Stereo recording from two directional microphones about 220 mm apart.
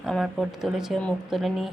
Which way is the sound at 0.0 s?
Centre (ahead or behind).